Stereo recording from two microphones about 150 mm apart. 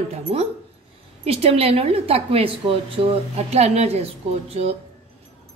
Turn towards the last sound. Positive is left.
turn(degrees=-45)  # may be behind; listen again after turning